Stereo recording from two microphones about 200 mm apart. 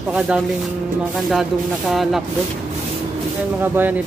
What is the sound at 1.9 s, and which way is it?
Speech, centre (ahead or behind).